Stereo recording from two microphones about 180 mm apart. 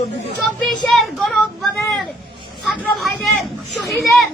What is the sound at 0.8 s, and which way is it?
Child singing, centre (ahead or behind).